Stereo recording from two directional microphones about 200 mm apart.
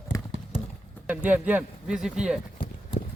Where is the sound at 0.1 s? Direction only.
15° left (ahead or behind).